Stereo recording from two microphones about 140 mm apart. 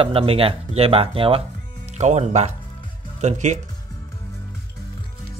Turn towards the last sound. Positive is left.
turn(degrees=-55)  # may be behind; listen again after turning